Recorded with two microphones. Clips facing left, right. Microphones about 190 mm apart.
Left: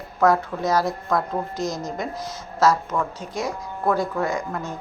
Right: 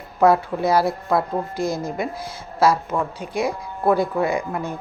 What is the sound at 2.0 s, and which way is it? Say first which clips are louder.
A woman's voice: right 2 dB; 10° right (ahead or behind).